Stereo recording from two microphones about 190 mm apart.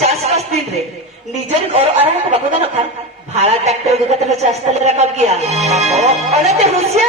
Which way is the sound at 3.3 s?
35° right (ahead or behind).